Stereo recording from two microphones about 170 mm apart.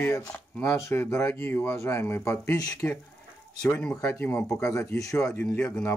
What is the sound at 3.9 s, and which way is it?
Speech, 15° left (ahead or behind).